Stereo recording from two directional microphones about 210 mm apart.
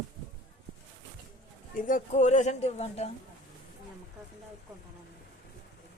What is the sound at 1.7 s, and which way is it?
Speech, 40° left (ahead or behind).